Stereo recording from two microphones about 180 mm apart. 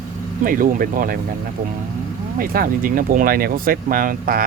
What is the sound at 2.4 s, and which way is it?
Speech, 55° right (ahead or behind).